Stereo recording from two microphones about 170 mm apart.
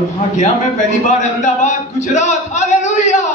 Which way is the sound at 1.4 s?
45° left (ahead or behind).